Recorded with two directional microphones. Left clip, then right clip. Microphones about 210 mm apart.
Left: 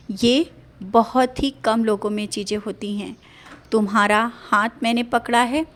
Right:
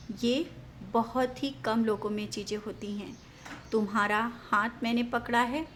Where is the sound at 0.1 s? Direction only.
40° left (ahead or behind).